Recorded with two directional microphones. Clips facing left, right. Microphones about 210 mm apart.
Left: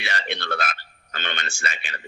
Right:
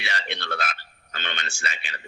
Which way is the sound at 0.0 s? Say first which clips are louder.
Left 3 dB; 50° left (ahead or behind).